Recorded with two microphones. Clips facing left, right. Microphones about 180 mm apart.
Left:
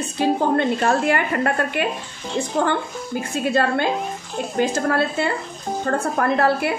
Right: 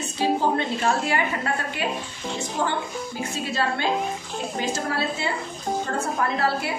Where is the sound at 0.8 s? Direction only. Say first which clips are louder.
Left 4 dB; 55° left (ahead or behind).